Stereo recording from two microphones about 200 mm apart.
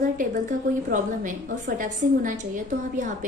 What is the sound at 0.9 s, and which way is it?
A woman's voice, 45° right (ahead or behind).